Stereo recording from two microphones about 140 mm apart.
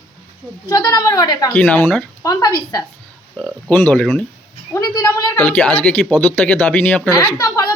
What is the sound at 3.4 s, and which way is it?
Speech, 5° left (ahead or behind).